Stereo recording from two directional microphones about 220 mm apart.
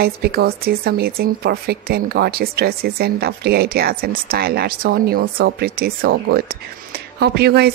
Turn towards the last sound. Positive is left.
turn(degrees=-45)  # may be behind; listen again after turning